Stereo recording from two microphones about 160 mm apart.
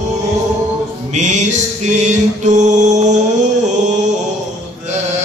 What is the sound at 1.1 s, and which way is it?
Mantra, 50° right (ahead or behind).